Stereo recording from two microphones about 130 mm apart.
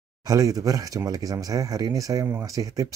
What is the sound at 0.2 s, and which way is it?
Speech, 25° right (ahead or behind).